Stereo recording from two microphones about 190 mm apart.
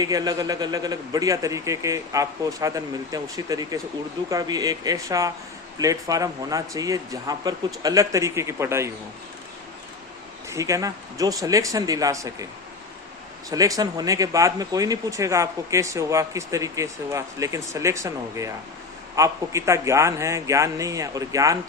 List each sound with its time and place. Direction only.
0.0 s a man's voice: 20° right (ahead or behind)
10.5 s speech: 15° right (ahead or behind)
13.5 s speech: 20° right (ahead or behind)